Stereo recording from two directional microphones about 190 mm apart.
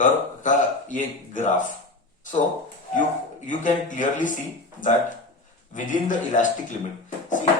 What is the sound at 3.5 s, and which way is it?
A man's voice, 40° left (ahead or behind).